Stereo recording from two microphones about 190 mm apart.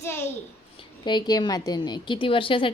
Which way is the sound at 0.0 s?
15° left (ahead or behind).